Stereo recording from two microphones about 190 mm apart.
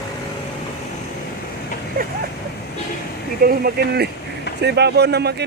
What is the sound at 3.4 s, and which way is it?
Speech, 55° right (ahead or behind).